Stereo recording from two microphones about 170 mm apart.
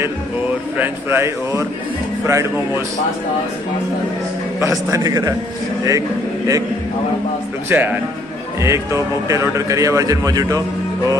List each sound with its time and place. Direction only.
0.7 s a man's voice: 15° right (ahead or behind)
4.6 s speech: 20° right (ahead or behind)
7.7 s a man's voice: 10° right (ahead or behind)